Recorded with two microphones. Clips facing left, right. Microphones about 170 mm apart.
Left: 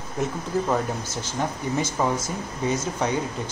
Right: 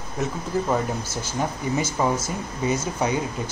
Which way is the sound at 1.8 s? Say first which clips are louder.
Right 1 dB; 5° right (ahead or behind).